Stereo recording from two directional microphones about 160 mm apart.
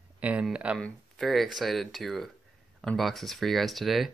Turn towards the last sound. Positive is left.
turn(degrees=0)  # may be behind; listen again after turning